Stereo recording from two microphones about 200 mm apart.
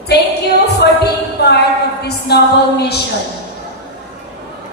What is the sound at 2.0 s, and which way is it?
A woman's voice, 55° left (ahead or behind).